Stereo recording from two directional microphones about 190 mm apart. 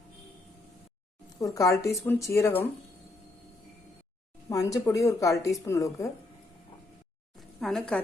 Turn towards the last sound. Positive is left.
turn(degrees=5)  # may be behind; listen again after turning